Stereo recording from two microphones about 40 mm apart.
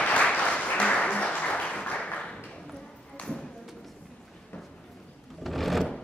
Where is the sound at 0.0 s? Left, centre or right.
Left.